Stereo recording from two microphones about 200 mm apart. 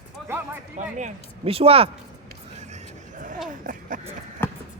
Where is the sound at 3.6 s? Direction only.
40° right (ahead or behind).